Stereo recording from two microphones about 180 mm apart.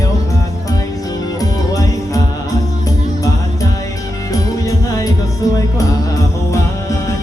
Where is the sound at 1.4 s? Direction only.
20° left (ahead or behind).